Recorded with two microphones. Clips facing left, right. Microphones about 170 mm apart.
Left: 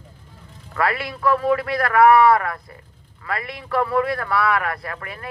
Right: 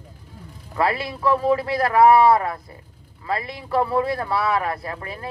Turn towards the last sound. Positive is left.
turn(degrees=-25)  # may be behind; listen again after turning